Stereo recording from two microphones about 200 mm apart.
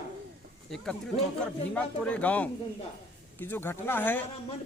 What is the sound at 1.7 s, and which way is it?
Speech, 5° left (ahead or behind).